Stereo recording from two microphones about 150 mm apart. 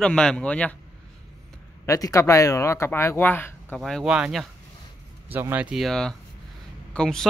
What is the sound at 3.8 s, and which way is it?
Speech, centre (ahead or behind).